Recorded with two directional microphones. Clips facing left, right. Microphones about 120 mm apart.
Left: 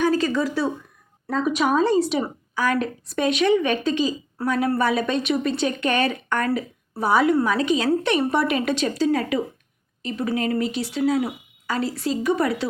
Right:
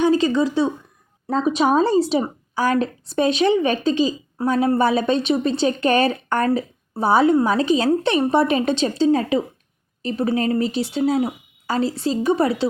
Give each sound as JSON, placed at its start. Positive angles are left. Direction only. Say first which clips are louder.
{"t": 0.0, "sound": "a woman's voice", "louder": "right 4 dB", "side_deg": -25}